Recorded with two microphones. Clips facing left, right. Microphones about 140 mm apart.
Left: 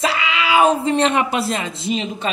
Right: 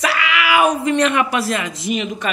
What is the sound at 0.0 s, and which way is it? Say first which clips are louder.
Speech: right 1 dB; 25° left (ahead or behind).